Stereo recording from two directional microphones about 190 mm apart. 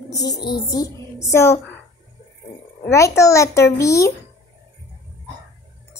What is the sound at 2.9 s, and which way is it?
A woman's voice, 15° left (ahead or behind).